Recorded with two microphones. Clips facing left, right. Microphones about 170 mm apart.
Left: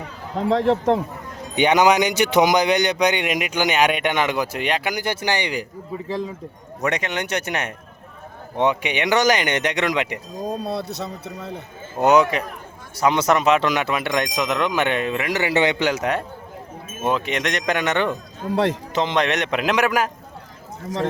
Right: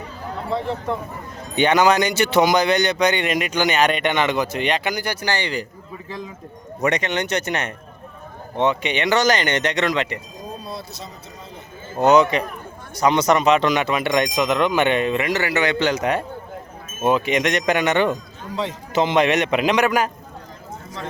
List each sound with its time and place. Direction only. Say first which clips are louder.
0.3 s a man's voice: left 7 dB; 90° left
1.5 s speech: even; 15° left (ahead or behind)
6.1 s speech: left 6 dB; 30° left (ahead or behind)
6.8 s speech: right 3 dB; 5° left (ahead or behind)
10.6 s speech: left 7 dB; 65° left (ahead or behind)
11.9 s speech: right 1 dB; 10° left (ahead or behind)
15.3 s speech: left 1 dB; 15° left (ahead or behind)
15.8 s speech: right 1 dB; 5° left (ahead or behind)
18.5 s a man's voice: left 6 dB; 70° left (ahead or behind)
18.9 s speech: right 5 dB; 5° right (ahead or behind)